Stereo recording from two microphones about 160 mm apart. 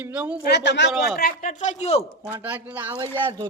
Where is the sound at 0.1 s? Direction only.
10° right (ahead or behind).